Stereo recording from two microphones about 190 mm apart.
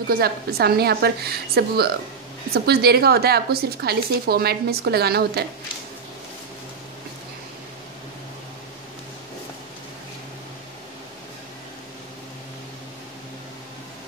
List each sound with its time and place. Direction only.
0.1 s a woman's voice: 55° right (ahead or behind)